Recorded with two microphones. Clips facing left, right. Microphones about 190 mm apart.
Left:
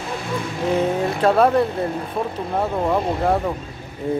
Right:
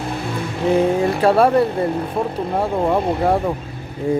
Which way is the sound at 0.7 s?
60° right (ahead or behind).